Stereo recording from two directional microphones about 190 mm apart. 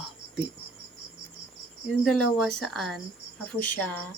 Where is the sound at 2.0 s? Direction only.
Centre (ahead or behind).